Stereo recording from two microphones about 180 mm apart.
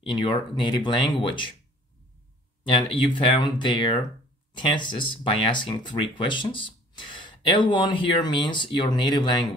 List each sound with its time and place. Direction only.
0.0 s speech: 25° left (ahead or behind)
2.6 s speech: 30° left (ahead or behind)